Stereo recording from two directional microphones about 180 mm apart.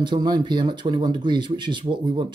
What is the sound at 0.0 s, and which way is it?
Speech, 25° right (ahead or behind).